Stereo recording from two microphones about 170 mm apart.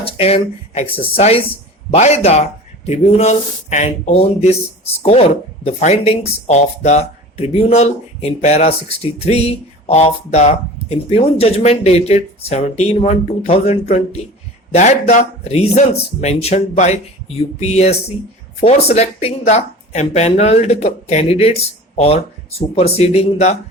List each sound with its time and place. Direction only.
0.0 s speech: 35° left (ahead or behind)